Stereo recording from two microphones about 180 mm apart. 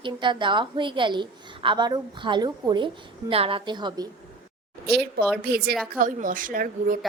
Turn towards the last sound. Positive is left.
turn(degrees=-50)  # may be behind; listen again after turning